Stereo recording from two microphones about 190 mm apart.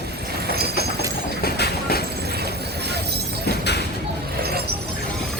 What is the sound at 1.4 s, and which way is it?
Train, 55° left (ahead or behind).